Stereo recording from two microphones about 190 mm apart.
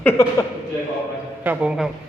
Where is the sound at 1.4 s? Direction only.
5° right (ahead or behind).